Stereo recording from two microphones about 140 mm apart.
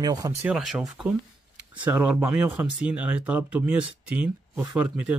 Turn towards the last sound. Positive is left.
turn(degrees=-10)  # may be behind; listen again after turning